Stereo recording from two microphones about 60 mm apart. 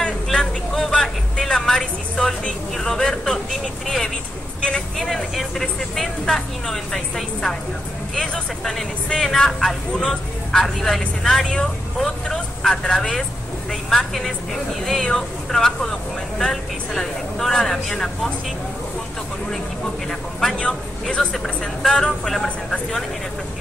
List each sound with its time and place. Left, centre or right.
0.0 s vehicle: centre
8.1 s speech: centre
20.1 s a sound: centre
21.8 s speech: centre